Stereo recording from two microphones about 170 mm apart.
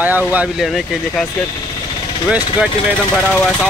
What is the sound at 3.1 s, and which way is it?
Speech, 5° left (ahead or behind).